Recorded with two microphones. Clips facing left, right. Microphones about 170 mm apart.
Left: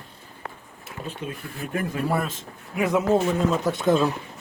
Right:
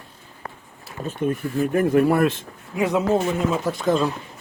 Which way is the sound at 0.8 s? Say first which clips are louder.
Right 9 dB; 45° right (ahead or behind).